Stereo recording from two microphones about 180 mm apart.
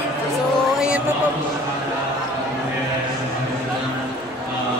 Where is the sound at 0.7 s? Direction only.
5° right (ahead or behind).